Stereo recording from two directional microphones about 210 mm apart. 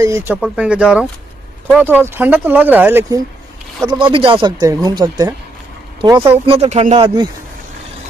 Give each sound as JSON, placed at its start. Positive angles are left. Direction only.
{"t": 0.3, "sound": "speech", "side_deg": -5}
{"t": 3.8, "sound": "speech", "side_deg": -25}